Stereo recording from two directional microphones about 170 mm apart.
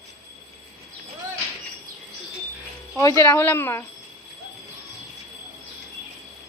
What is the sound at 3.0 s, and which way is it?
Speech, 20° left (ahead or behind).